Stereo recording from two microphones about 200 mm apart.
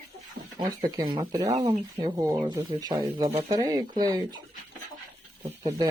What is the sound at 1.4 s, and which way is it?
Speech, 35° right (ahead or behind).